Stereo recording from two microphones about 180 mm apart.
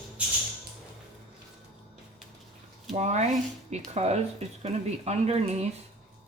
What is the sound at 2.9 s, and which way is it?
Speech, 40° right (ahead or behind).